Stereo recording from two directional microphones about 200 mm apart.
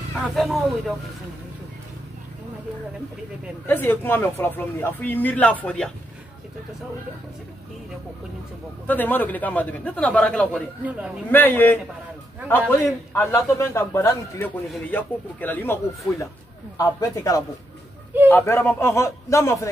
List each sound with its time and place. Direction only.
0.2 s speech: centre (ahead or behind)
3.6 s speech: 10° left (ahead or behind)
8.8 s speech: 10° left (ahead or behind)